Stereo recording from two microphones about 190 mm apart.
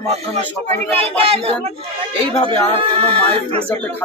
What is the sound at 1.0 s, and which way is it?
Speech, 30° right (ahead or behind).